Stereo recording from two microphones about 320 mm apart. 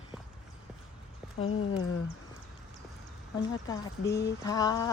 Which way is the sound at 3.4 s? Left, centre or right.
Centre.